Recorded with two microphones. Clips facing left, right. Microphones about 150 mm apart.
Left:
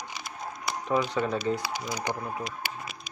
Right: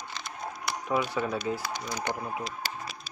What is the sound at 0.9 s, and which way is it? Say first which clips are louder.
Speech: left 2 dB; 5° right (ahead or behind).